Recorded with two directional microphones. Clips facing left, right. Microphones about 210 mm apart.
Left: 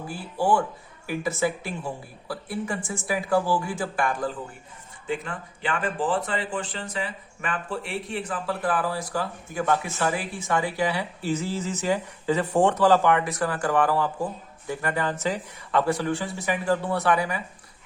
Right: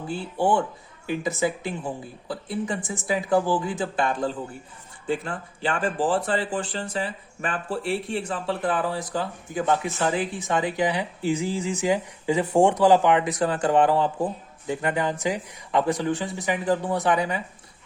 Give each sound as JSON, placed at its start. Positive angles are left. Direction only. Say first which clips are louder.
{"t": 0.1, "sound": "speech", "louder": "right 1 dB", "side_deg": -25}